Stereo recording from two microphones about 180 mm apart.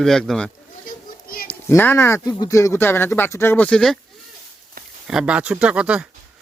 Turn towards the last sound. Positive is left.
turn(degrees=-5)  # may be behind; listen again after turning